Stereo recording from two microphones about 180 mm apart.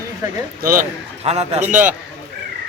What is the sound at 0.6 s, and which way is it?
Speech, 50° right (ahead or behind).